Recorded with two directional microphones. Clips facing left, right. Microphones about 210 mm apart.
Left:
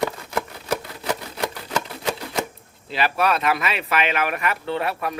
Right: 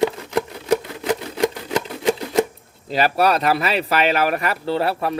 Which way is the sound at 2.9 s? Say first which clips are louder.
Right 4 dB; 40° right (ahead or behind).